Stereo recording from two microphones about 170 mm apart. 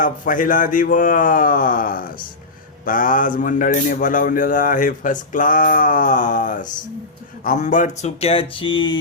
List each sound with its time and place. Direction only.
0.0 s a man's voice: 50° left (ahead or behind); by 9.0 s 30° left (ahead or behind)